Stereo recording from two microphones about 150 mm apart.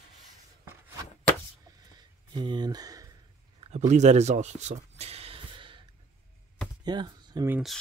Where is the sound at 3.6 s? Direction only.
50° right (ahead or behind); by 5.8 s 35° right (ahead or behind).